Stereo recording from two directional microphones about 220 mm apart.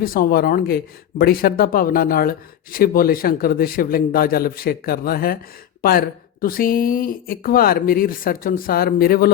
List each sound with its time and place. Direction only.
0.0 s speech: 40° left (ahead or behind)